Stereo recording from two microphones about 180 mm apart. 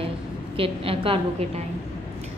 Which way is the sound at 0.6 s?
30° right (ahead or behind).